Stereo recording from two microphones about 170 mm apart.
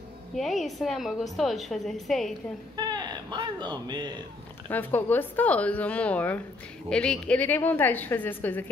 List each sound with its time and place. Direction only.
0.4 s a woman's voice: centre (ahead or behind)
2.7 s speech: 25° right (ahead or behind)
4.6 s a woman's voice: 10° left (ahead or behind)